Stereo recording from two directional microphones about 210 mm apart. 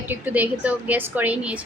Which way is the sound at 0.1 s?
10° right (ahead or behind).